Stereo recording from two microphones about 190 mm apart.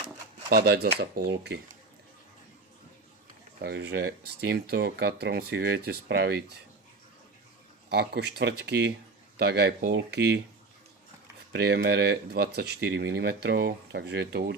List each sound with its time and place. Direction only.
0.5 s speech: 55° right (ahead or behind)
3.6 s speech: 60° right (ahead or behind)
7.9 s speech: 55° right (ahead or behind)
11.5 s speech: 60° right (ahead or behind)